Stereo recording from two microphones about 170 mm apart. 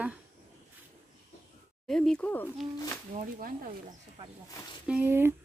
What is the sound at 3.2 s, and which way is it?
Speech, 50° right (ahead or behind).